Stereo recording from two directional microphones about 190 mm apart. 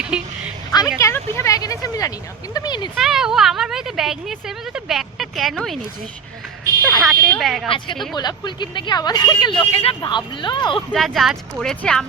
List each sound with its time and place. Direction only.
0.1 s speech: 5° right (ahead or behind)
0.9 s speech: 15° left (ahead or behind)
2.9 s speech: centre (ahead or behind)
7.0 s speech: centre (ahead or behind)
8.1 s speech: 20° left (ahead or behind)
10.9 s speech: centre (ahead or behind)